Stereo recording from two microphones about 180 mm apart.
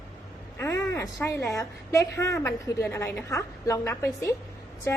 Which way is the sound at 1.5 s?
15° left (ahead or behind).